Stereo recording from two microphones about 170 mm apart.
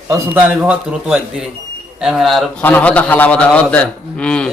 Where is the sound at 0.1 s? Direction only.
15° right (ahead or behind); by 4.5 s 5° left (ahead or behind).